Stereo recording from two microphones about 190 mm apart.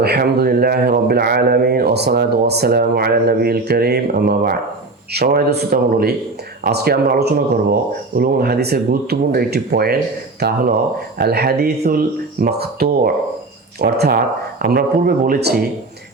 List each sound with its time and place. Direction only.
0.0 s a man's voice: 55° right (ahead or behind)